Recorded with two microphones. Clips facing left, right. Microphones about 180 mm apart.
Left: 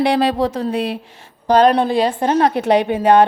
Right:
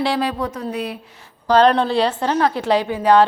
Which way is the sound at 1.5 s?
15° left (ahead or behind).